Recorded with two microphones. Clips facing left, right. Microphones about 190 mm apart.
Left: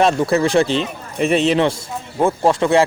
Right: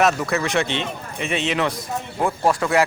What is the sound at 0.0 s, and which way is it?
A man's voice, 30° left (ahead or behind).